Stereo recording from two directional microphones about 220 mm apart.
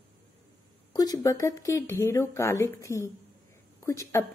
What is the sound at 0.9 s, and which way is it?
Speech, 15° left (ahead or behind).